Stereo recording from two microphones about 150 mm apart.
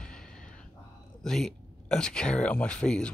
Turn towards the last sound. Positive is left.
turn(degrees=5)  # may be behind; listen again after turning